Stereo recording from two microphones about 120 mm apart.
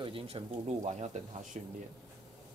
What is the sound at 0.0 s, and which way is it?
Speech, 50° right (ahead or behind).